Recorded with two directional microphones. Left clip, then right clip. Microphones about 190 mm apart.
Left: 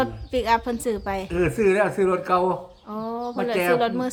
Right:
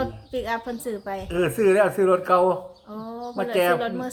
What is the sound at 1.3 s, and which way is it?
A man's voice, centre (ahead or behind).